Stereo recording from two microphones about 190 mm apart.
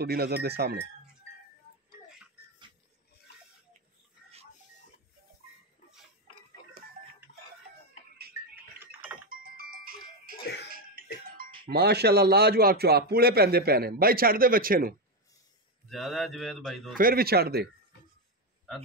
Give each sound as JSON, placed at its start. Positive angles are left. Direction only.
{"t": 0.0, "sound": "a man's voice", "side_deg": -55}
{"t": 7.3, "sound": "chicken", "side_deg": 45}
{"t": 9.3, "sound": "music", "side_deg": -50}
{"t": 11.6, "sound": "a man's voice", "side_deg": -60}
{"t": 15.9, "sound": "speech", "side_deg": 0}
{"t": 16.9, "sound": "speech", "side_deg": -50}